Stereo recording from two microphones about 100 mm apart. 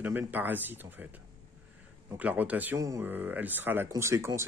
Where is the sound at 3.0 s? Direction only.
20° right (ahead or behind).